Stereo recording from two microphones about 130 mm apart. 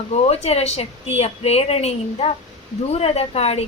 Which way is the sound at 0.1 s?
55° left (ahead or behind).